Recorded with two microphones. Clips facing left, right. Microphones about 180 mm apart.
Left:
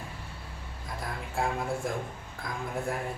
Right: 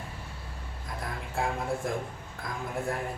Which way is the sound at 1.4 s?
Centre (ahead or behind).